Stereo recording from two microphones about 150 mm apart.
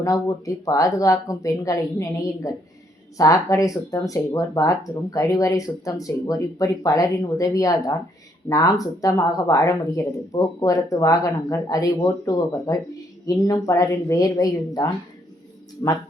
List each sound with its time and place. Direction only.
0.0 s speech: 20° left (ahead or behind)